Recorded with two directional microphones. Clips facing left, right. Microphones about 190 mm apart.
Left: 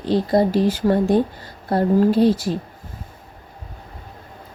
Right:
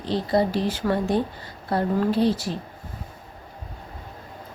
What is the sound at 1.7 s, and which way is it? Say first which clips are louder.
Speech: left 6 dB; 40° left (ahead or behind).